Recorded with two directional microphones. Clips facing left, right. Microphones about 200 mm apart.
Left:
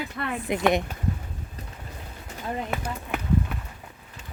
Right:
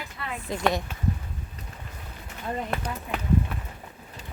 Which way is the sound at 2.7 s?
5° left (ahead or behind).